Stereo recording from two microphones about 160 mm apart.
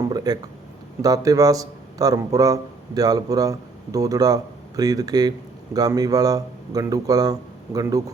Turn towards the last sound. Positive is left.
turn(degrees=-20)  # may be behind; listen again after turning